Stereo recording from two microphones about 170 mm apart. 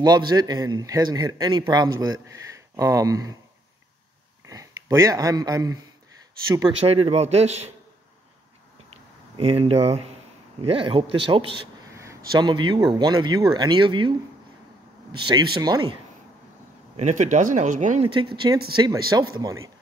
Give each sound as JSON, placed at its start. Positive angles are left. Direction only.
{"t": 0.0, "sound": "a man's voice", "side_deg": -25}
{"t": 4.5, "sound": "speech", "side_deg": -20}
{"t": 6.8, "sound": "a man's voice", "side_deg": -35}
{"t": 9.4, "sound": "a man's voice", "side_deg": -35}
{"t": 11.9, "sound": "a sound", "side_deg": -20}
{"t": 12.4, "sound": "a man's voice", "side_deg": -25}
{"t": 15.1, "sound": "a man's voice", "side_deg": -25}
{"t": 16.9, "sound": "speech", "side_deg": -45}
{"t": 18.1, "sound": "a man's voice", "side_deg": -30}